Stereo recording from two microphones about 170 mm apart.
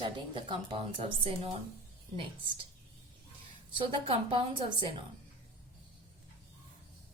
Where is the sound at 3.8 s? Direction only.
30° right (ahead or behind).